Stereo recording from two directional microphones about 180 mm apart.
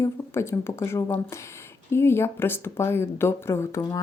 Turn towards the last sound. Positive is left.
turn(degrees=15)  # may be behind; listen again after turning